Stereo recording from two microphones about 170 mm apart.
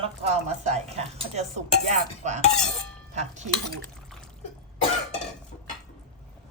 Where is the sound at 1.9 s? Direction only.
45° right (ahead or behind).